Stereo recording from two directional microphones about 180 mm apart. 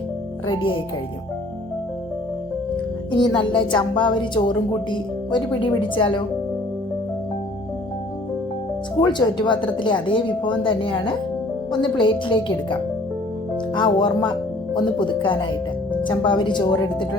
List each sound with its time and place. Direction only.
0.4 s a woman's voice: 30° left (ahead or behind)
3.1 s a woman's voice: 25° left (ahead or behind)
9.0 s a woman's voice: 25° left (ahead or behind)
13.7 s a woman's voice: 25° left (ahead or behind)